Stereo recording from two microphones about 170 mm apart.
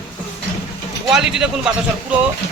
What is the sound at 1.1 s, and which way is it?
Speech, 5° right (ahead or behind).